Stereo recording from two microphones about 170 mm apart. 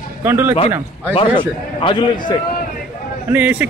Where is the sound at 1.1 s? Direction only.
30° left (ahead or behind).